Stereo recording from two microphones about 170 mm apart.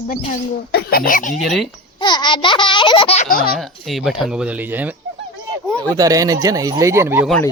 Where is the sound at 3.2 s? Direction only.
55° left (ahead or behind).